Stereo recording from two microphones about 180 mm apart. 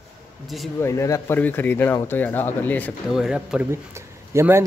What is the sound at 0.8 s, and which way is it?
Speech, 15° left (ahead or behind).